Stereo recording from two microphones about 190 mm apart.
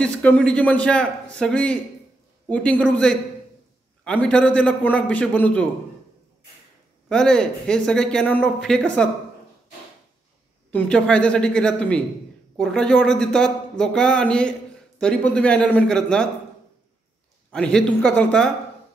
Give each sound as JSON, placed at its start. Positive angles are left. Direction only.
{"t": 0.0, "sound": "speech", "side_deg": 5}
{"t": 7.1, "sound": "speech", "side_deg": 5}
{"t": 10.7, "sound": "speech", "side_deg": 5}
{"t": 17.5, "sound": "speech", "side_deg": 5}